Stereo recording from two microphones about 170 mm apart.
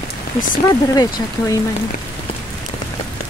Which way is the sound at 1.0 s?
20° left (ahead or behind).